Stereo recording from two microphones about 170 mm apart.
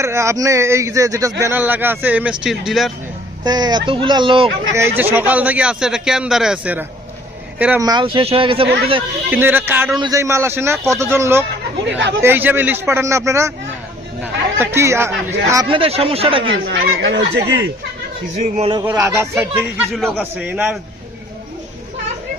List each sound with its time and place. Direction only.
0.0 s a man's voice: 15° right (ahead or behind)
3.4 s speech: 25° right (ahead or behind)
4.7 s a man's voice: 15° right (ahead or behind)
7.8 s speech: 25° right (ahead or behind)
9.3 s a man's voice: 10° right (ahead or behind)
11.9 s speech: 90° right
12.2 s a man's voice: 10° right (ahead or behind)
15.7 s speech: 35° right (ahead or behind)
16.6 s speech: 85° right
18.3 s speech: 40° right (ahead or behind)
18.9 s a man's voice: 15° right (ahead or behind)
19.9 s a man's voice: 5° left (ahead or behind)
20.5 s a man's voice: 15° right (ahead or behind)